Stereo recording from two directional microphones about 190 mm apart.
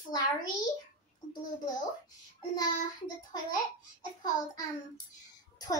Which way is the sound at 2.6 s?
20° left (ahead or behind).